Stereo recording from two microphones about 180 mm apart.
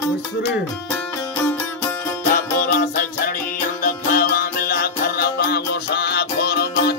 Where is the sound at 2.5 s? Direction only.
50° left (ahead or behind).